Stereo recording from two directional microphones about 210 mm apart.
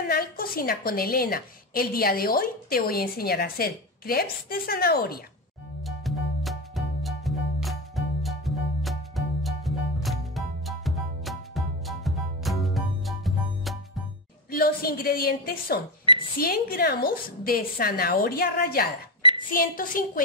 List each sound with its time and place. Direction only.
0.0 s a woman's voice: 45° left (ahead or behind)
5.9 s music: centre (ahead or behind)
14.5 s a woman's voice: 45° left (ahead or behind)